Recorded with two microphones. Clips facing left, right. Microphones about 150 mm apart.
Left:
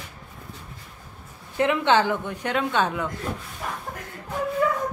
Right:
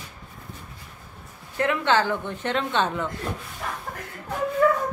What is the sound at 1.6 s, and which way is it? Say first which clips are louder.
A woman's voice: left 2 dB; 15° left (ahead or behind).